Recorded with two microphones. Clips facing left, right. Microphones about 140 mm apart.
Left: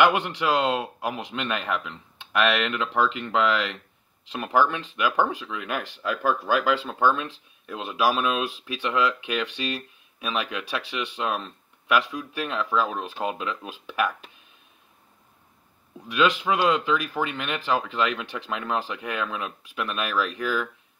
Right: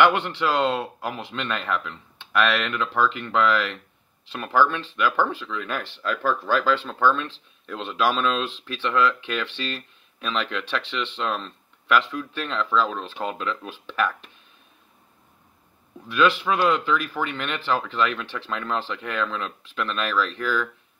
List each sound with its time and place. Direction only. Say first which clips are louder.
0.0 s speech: right 1 dB; 15° left (ahead or behind)
16.1 s speech: right 1 dB; 15° left (ahead or behind)